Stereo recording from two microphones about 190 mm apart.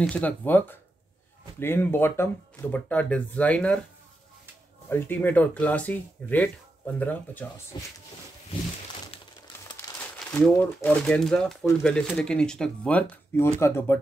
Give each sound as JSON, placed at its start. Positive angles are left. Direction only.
{"t": 0.0, "sound": "speech", "side_deg": 5}
{"t": 4.8, "sound": "speech", "side_deg": 10}
{"t": 7.7, "sound": "speech", "side_deg": 20}
{"t": 9.9, "sound": "speech", "side_deg": 5}